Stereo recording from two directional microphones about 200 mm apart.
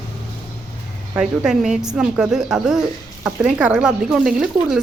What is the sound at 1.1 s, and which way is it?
Speech, 5° right (ahead or behind).